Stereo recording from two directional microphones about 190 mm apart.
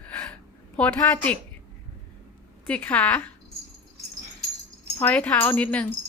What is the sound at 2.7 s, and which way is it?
Speech, 5° left (ahead or behind).